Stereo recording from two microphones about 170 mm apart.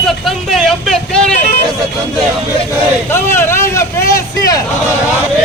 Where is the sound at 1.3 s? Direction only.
45° left (ahead or behind).